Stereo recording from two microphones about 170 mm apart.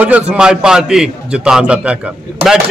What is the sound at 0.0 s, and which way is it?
A man's voice, 5° right (ahead or behind).